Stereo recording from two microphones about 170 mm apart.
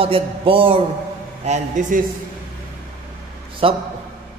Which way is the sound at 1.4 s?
45° right (ahead or behind).